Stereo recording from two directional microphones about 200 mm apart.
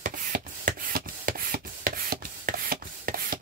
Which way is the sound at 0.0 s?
45° right (ahead or behind).